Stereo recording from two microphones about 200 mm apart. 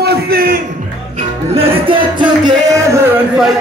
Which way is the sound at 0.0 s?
50° right (ahead or behind).